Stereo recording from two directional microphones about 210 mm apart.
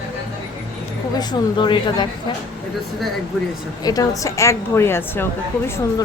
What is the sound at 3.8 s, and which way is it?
A woman's voice, 15° left (ahead or behind).